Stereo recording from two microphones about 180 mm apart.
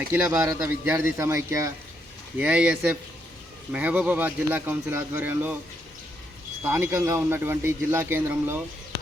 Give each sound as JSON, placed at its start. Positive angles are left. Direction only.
{"t": 0.1, "sound": "a man's voice", "side_deg": -10}
{"t": 6.7, "sound": "a man's voice", "side_deg": -15}